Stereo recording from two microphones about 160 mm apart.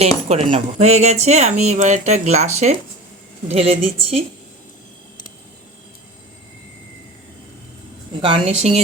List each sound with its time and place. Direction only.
0.0 s a woman's voice: 40° right (ahead or behind)
8.2 s a woman's voice: 35° right (ahead or behind)